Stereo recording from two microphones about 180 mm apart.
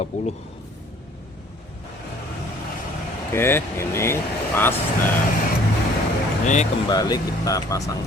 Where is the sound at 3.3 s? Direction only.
15° left (ahead or behind).